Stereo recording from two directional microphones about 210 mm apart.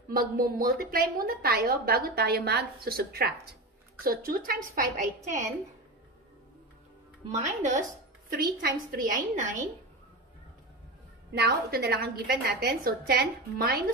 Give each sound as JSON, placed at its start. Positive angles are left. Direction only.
{"t": 0.1, "sound": "a woman's voice", "side_deg": -40}
{"t": 7.2, "sound": "a woman's voice", "side_deg": -35}
{"t": 11.3, "sound": "a woman's voice", "side_deg": -50}